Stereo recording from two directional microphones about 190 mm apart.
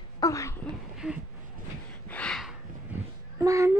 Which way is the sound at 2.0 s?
5° left (ahead or behind).